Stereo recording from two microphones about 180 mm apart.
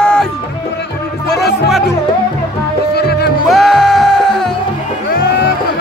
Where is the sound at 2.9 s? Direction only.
60° left (ahead or behind).